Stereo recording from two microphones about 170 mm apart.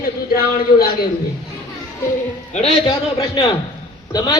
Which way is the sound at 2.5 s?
35° left (ahead or behind).